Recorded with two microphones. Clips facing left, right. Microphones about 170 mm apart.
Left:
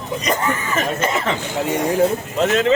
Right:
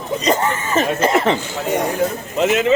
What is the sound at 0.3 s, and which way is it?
Speech, 30° right (ahead or behind).